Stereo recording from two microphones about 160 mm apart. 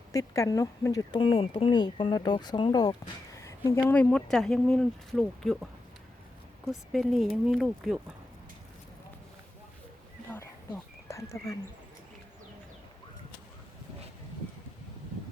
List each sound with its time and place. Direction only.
0.1 s speech: 20° left (ahead or behind)
3.3 s speech: 20° left (ahead or behind); by 5.6 s centre (ahead or behind)
6.7 s speech: centre (ahead or behind)
10.2 s a sound: 15° left (ahead or behind)